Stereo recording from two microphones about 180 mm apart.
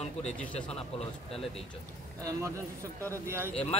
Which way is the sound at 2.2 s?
15° right (ahead or behind).